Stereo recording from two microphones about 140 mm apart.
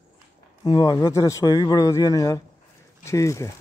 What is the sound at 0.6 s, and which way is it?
A man's voice, 25° left (ahead or behind).